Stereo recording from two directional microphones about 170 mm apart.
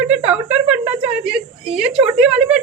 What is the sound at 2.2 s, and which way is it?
Speech, 5° right (ahead or behind).